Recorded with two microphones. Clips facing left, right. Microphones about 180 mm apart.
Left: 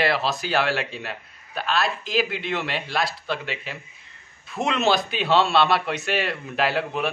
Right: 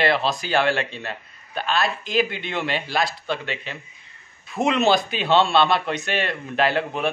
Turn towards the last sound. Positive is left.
turn(degrees=5)  # may be behind; listen again after turning